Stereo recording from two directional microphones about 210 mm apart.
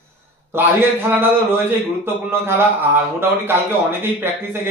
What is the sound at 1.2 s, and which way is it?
Speech, 10° right (ahead or behind).